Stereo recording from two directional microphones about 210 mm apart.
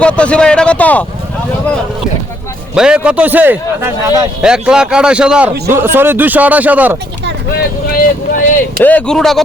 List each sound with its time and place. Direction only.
0.0 s a man's voice: 5° left (ahead or behind)
2.7 s a man's voice: 5° right (ahead or behind)
4.4 s a man's voice: 5° right (ahead or behind)
7.9 s boat: 45° left (ahead or behind)
8.8 s a man's voice: 5° left (ahead or behind)